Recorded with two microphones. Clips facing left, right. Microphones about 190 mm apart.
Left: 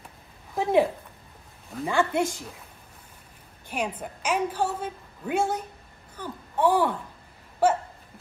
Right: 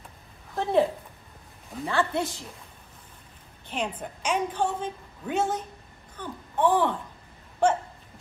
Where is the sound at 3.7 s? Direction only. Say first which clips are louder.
Left 1 dB; 10° left (ahead or behind).